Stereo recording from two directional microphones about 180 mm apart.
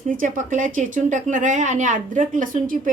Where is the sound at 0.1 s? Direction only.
45° right (ahead or behind).